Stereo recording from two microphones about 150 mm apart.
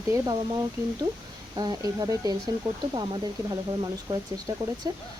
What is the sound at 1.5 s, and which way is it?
Speech, 25° right (ahead or behind).